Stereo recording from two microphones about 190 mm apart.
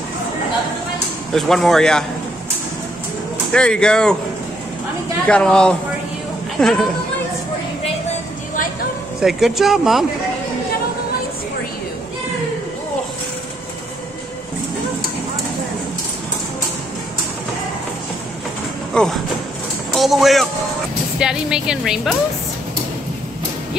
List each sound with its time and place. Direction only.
1.3 s speech: centre (ahead or behind)
3.5 s speech: 5° left (ahead or behind)
5.3 s speech: 5° left (ahead or behind)
9.2 s speech: centre (ahead or behind)
18.9 s speech: 5° left (ahead or behind)